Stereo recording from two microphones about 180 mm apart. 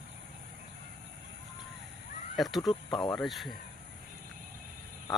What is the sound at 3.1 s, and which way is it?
Speech, centre (ahead or behind).